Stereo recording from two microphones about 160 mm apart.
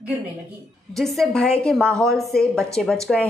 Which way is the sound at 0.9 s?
Centre (ahead or behind).